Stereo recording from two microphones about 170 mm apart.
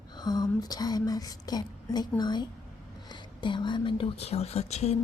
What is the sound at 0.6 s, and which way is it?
Speech, 25° left (ahead or behind).